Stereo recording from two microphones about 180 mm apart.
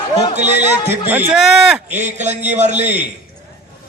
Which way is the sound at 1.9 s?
40° right (ahead or behind).